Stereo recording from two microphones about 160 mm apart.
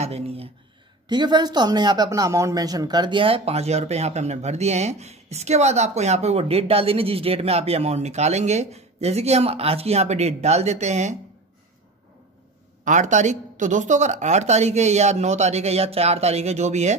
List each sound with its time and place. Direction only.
0.0 s a sound: 40° right (ahead or behind)
1.0 s speech: 25° right (ahead or behind); by 11.1 s 45° right (ahead or behind)
12.8 s speech: 50° right (ahead or behind)